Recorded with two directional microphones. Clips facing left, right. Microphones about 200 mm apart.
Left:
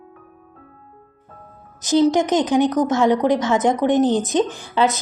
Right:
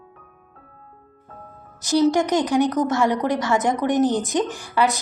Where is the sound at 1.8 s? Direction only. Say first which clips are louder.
Left 2 dB; 20° left (ahead or behind).